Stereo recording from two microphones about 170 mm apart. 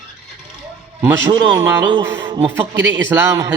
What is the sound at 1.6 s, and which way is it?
Speech, 15° right (ahead or behind).